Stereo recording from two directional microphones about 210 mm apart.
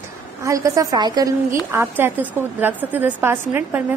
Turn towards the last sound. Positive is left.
turn(degrees=-10)  # may be behind; listen again after turning